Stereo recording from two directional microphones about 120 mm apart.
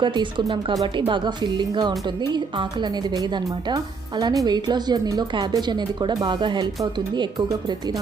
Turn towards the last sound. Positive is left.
turn(degrees=-35)  # may be behind; listen again after turning